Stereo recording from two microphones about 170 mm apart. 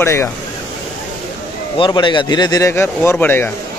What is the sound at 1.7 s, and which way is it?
Speech, 30° left (ahead or behind).